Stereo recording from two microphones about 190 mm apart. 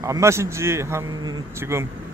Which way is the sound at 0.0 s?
15° right (ahead or behind).